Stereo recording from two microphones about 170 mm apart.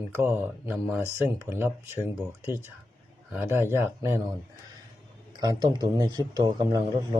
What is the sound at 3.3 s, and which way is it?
Speech, 10° right (ahead or behind).